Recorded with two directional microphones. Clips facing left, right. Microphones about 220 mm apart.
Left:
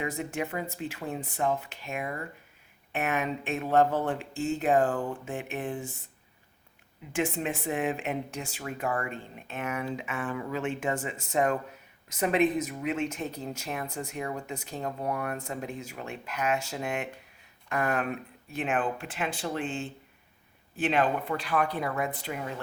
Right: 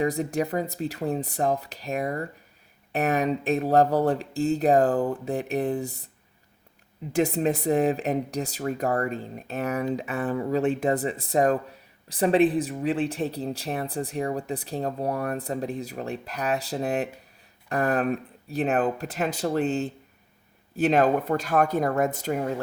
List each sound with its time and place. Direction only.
0.0 s speech: 35° right (ahead or behind)
7.1 s speech: 35° right (ahead or behind)